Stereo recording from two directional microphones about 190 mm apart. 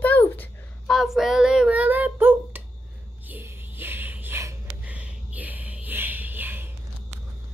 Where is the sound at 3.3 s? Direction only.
10° right (ahead or behind).